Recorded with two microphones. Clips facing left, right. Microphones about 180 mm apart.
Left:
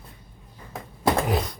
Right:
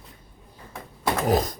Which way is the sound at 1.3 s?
40° right (ahead or behind).